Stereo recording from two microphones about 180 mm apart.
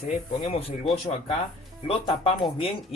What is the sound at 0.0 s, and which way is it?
Speech, 35° left (ahead or behind).